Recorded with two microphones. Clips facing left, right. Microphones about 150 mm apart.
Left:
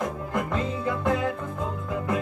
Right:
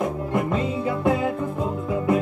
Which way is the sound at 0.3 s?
25° right (ahead or behind).